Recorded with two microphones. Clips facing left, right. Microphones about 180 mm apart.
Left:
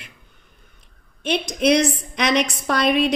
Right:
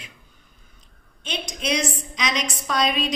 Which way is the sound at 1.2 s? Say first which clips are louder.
Left 9 dB; 60° left (ahead or behind).